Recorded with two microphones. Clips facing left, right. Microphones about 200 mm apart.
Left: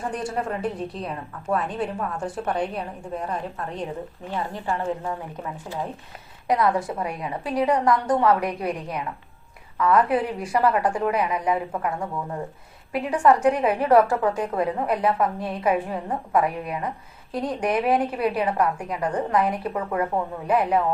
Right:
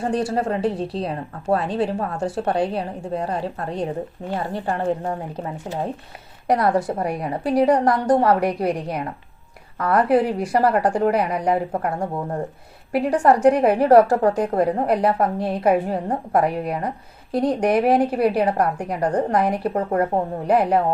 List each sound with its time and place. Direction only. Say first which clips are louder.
0.3 s a woman's voice: right 5 dB; 30° right (ahead or behind)
6.5 s a woman's voice: right 3 dB; 35° right (ahead or behind)